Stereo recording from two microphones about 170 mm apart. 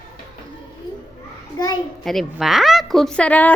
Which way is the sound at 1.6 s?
25° left (ahead or behind).